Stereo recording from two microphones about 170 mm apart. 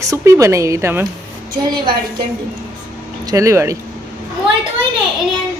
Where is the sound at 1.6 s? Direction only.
25° right (ahead or behind).